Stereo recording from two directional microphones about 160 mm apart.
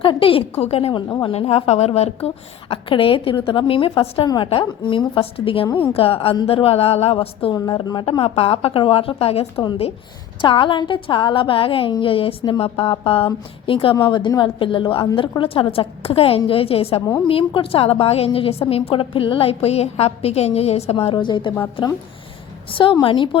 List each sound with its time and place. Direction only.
0.0 s a woman's voice: 35° left (ahead or behind)
8.2 s a woman's voice: 35° left (ahead or behind)
22.7 s a woman's voice: 30° left (ahead or behind)